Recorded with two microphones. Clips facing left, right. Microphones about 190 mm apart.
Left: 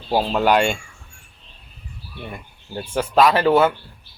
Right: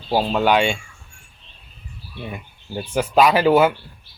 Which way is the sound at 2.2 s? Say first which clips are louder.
Right 3 dB; 10° right (ahead or behind).